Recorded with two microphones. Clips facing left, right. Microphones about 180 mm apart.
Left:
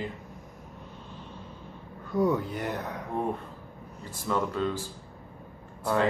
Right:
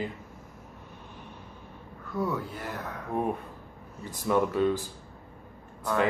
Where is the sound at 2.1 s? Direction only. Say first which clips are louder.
Left 5 dB; 20° left (ahead or behind).